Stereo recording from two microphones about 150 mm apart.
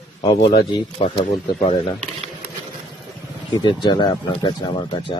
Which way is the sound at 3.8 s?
30° left (ahead or behind).